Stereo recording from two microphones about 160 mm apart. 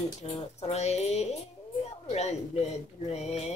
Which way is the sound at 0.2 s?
35° left (ahead or behind).